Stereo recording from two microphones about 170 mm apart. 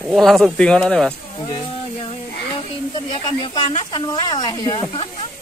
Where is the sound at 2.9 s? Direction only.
30° left (ahead or behind).